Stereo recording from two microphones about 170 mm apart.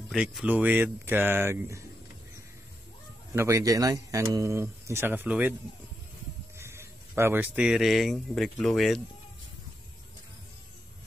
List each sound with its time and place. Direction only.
0.1 s speech: centre (ahead or behind)
3.3 s speech: 20° right (ahead or behind)
6.6 s speech: 15° right (ahead or behind); by 9.0 s centre (ahead or behind)